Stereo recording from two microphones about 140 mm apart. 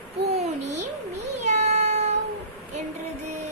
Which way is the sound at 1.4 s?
55° right (ahead or behind).